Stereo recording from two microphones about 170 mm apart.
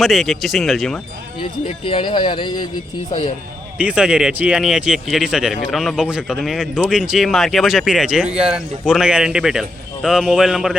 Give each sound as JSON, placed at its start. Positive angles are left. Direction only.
{"t": 0.0, "sound": "speech", "side_deg": 0}
{"t": 1.4, "sound": "speech", "side_deg": 30}
{"t": 3.8, "sound": "speech", "side_deg": -5}